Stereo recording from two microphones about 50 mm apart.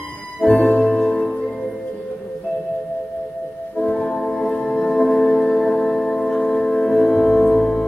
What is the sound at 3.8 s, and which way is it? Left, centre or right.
Music, left.